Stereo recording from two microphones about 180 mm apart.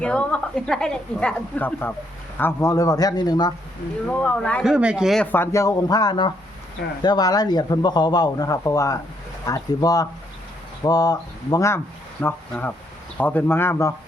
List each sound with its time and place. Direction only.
0.0 s speech: 5° left (ahead or behind); by 3.5 s 25° left (ahead or behind)
4.1 s speech: 5° left (ahead or behind)
4.7 s speech: 5° right (ahead or behind); by 13.9 s 15° left (ahead or behind)